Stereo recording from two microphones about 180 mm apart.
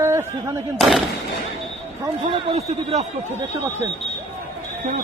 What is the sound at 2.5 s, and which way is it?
Speech, 35° right (ahead or behind).